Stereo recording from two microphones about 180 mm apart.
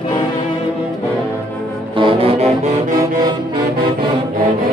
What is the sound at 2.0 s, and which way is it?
Brass instrument, 30° right (ahead or behind).